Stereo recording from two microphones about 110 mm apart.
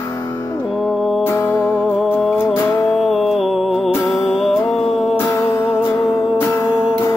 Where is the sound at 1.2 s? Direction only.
20° left (ahead or behind).